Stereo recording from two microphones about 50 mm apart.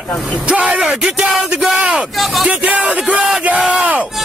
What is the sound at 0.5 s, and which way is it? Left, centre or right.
Speech, right.